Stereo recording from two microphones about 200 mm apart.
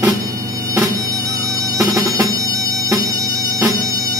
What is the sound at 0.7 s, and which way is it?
Music, 15° right (ahead or behind).